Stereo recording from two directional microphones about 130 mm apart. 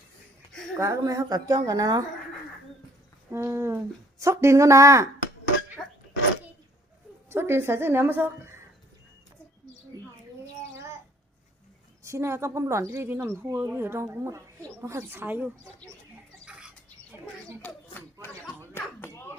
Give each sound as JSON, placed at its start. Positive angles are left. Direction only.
{"t": 0.8, "sound": "a woman's voice", "side_deg": -25}
{"t": 3.3, "sound": "a woman's voice", "side_deg": -20}
{"t": 7.3, "sound": "a woman's voice", "side_deg": -20}
{"t": 12.0, "sound": "a woman's voice", "side_deg": -20}
{"t": 16.5, "sound": "bird", "side_deg": -10}
{"t": 17.6, "sound": "speech", "side_deg": 10}
{"t": 18.7, "sound": "a sound", "side_deg": 20}